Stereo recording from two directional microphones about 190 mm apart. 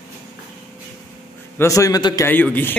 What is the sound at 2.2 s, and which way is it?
Speech, 10° left (ahead or behind).